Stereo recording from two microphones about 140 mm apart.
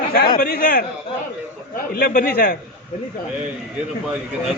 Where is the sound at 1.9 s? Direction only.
80° left.